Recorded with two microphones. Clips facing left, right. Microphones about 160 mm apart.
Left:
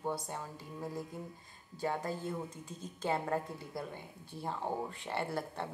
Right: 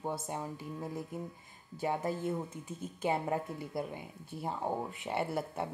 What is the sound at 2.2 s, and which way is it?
Speech, 10° right (ahead or behind).